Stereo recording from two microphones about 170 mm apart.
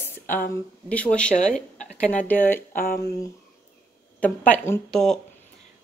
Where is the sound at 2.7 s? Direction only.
55° left (ahead or behind).